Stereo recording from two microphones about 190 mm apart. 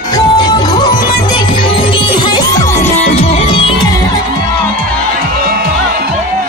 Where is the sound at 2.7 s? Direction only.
35° left (ahead or behind).